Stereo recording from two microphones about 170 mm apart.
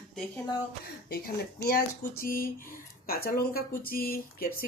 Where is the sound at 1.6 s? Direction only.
60° left (ahead or behind).